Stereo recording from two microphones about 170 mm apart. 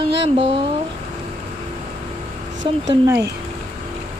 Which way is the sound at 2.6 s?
25° right (ahead or behind).